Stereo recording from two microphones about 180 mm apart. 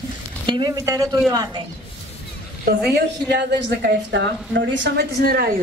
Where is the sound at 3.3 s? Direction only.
70° right (ahead or behind).